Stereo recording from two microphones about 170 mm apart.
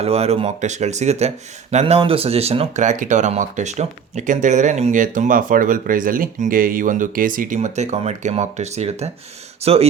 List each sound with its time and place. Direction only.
0.0 s speech: 35° right (ahead or behind)